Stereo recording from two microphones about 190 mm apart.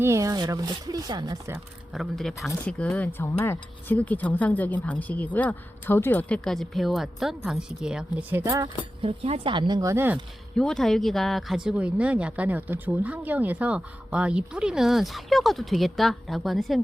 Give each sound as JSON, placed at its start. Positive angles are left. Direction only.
{"t": 0.0, "sound": "speech", "side_deg": -15}
{"t": 1.9, "sound": "speech", "side_deg": 0}
{"t": 9.0, "sound": "speech", "side_deg": -30}
{"t": 10.6, "sound": "speech", "side_deg": 0}